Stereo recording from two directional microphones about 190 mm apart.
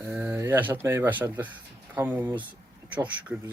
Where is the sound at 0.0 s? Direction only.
10° right (ahead or behind).